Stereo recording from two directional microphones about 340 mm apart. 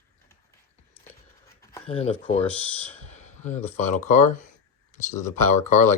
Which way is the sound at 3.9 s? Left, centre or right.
Left.